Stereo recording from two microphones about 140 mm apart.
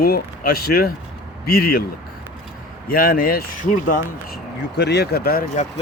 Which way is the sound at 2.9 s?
90° left.